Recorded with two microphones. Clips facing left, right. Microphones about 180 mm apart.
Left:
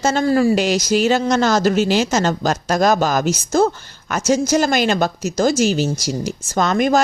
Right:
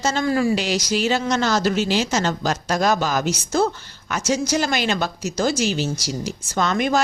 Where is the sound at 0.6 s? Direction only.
50° left (ahead or behind).